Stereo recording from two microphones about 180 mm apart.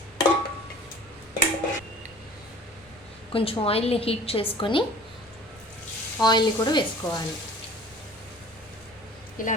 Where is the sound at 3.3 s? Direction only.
30° left (ahead or behind).